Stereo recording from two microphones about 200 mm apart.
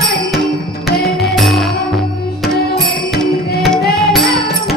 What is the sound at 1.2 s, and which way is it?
Music, centre (ahead or behind).